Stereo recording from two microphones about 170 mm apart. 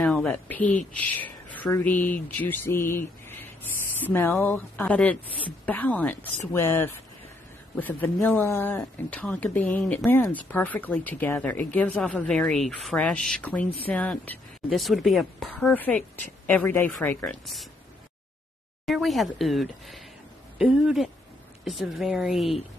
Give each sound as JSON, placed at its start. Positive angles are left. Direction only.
{"t": 0.0, "sound": "speech", "side_deg": 5}
{"t": 18.9, "sound": "speech", "side_deg": 0}